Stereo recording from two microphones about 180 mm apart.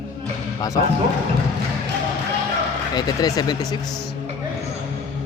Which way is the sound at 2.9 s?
25° left (ahead or behind).